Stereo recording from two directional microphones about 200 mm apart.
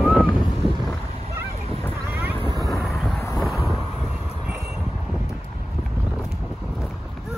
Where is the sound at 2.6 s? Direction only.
Centre (ahead or behind).